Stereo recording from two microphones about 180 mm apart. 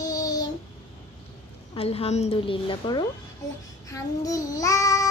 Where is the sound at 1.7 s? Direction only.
35° left (ahead or behind).